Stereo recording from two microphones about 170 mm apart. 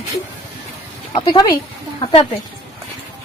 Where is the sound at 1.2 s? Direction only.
25° left (ahead or behind).